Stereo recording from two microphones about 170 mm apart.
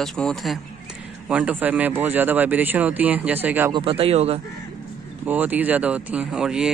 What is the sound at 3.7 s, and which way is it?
Speech, 35° right (ahead or behind).